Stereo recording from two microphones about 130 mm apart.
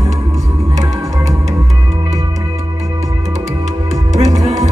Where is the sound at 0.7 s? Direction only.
55° right (ahead or behind).